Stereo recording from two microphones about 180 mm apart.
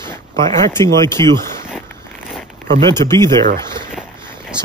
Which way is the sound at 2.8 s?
15° left (ahead or behind).